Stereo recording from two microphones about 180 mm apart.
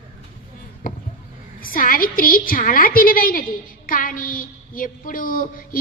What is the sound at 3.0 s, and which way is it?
A woman's voice, 50° left (ahead or behind).